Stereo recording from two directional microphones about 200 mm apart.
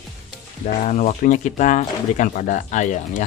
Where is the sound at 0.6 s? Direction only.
35° left (ahead or behind).